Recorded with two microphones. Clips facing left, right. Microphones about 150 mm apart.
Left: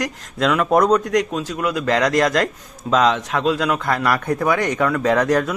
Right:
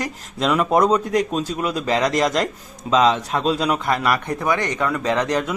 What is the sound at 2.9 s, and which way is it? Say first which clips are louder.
Speech: even; 25° right (ahead or behind).